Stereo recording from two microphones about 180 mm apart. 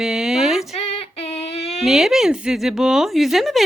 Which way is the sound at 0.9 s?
35° left (ahead or behind).